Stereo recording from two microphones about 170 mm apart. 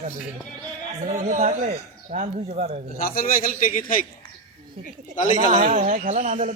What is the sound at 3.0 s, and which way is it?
Speech, 55° left (ahead or behind).